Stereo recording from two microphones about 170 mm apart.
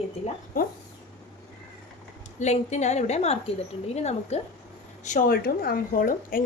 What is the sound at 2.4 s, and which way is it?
A woman's voice, 45° left (ahead or behind).